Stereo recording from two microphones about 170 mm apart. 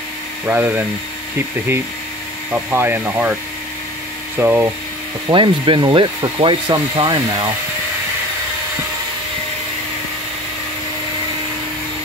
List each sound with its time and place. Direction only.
0.5 s speech: 10° right (ahead or behind)
2.5 s speech: 15° right (ahead or behind)
4.4 s speech: 10° right (ahead or behind)
5.3 s wood: 30° right (ahead or behind)